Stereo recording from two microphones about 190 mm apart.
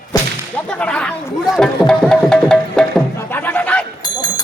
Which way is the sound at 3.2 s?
10° left (ahead or behind).